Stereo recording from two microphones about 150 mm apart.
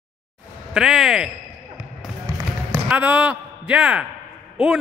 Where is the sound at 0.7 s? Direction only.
Centre (ahead or behind).